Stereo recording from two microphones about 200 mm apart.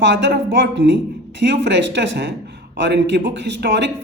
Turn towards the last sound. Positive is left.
turn(degrees=-60)  # may be behind; listen again after turning